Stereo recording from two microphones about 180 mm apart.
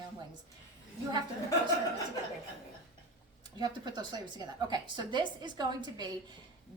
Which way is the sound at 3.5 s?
25° right (ahead or behind).